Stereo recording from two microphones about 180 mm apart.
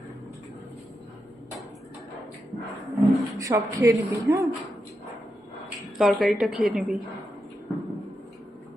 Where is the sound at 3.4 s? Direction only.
20° right (ahead or behind).